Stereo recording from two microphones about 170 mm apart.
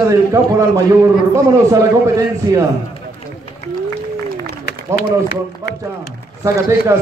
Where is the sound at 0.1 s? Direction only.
20° right (ahead or behind).